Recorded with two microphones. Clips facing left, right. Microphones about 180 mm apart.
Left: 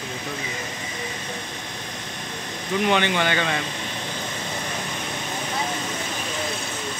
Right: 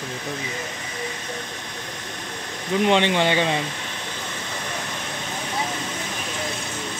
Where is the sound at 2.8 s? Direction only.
25° right (ahead or behind).